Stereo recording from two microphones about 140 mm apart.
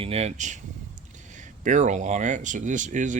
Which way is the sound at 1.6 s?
60° right (ahead or behind).